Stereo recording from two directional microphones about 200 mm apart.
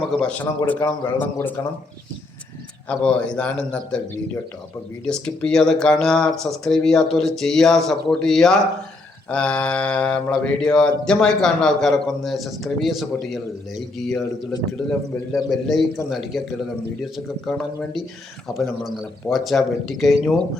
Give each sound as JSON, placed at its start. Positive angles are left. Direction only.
{"t": 0.2, "sound": "a man's voice", "side_deg": 5}
{"t": 2.9, "sound": "mantra", "side_deg": 5}
{"t": 19.3, "sound": "mantra", "side_deg": 0}